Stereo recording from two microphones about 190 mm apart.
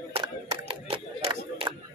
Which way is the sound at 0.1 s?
30° right (ahead or behind).